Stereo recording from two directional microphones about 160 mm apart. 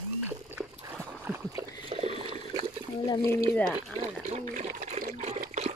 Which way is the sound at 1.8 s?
40° right (ahead or behind).